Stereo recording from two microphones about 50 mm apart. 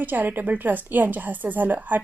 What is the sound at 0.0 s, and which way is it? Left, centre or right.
A woman's voice, right.